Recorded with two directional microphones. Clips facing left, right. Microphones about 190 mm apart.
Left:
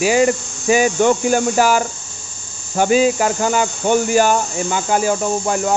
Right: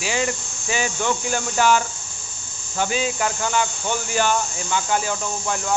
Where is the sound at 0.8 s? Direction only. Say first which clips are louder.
Left 8 dB; 50° left (ahead or behind).